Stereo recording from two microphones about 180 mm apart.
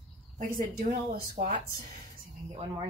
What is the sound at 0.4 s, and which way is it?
Speech, 45° right (ahead or behind).